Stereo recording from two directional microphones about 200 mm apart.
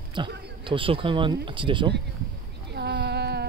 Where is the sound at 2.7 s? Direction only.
60° right (ahead or behind).